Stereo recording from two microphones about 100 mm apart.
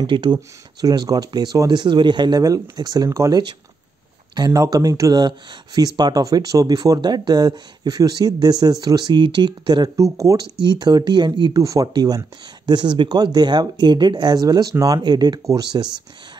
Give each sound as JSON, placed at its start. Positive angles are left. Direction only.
{"t": 0.0, "sound": "speech", "side_deg": -50}
{"t": 10.6, "sound": "speech", "side_deg": -45}
{"t": 11.5, "sound": "speech", "side_deg": -35}